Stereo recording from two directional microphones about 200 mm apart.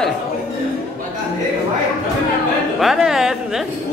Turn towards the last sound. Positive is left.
turn(degrees=0)  # may be behind; listen again after turning